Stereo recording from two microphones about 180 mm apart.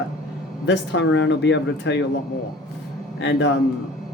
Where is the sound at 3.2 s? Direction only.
85° left.